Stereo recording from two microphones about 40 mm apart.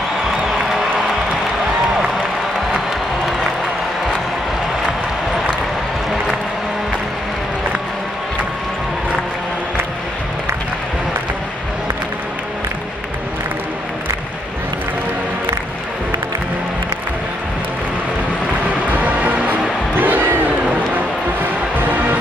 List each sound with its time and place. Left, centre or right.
18.9 s music: right
20.0 s crowd: right
21.7 s music: right